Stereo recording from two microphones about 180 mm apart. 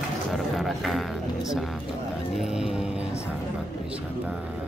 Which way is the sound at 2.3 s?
5° right (ahead or behind).